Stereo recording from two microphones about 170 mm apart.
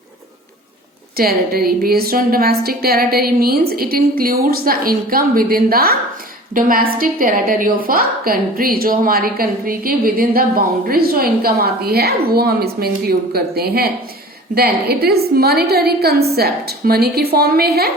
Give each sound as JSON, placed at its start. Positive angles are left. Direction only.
{"t": 1.1, "sound": "a woman's voice", "side_deg": -65}